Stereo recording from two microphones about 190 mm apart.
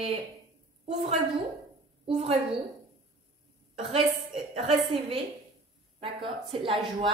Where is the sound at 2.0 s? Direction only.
35° right (ahead or behind).